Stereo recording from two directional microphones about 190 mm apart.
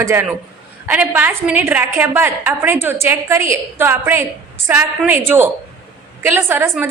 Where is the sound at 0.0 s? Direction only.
10° right (ahead or behind).